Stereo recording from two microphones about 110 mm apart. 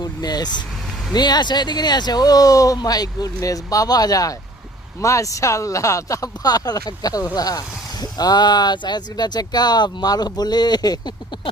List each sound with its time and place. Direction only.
0.0 s speech: 35° left (ahead or behind)